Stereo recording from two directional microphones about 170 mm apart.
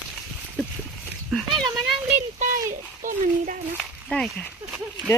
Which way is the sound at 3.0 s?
50° right (ahead or behind).